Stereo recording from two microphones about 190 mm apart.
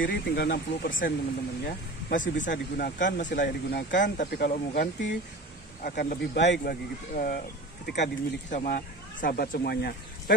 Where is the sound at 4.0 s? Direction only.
50° left (ahead or behind).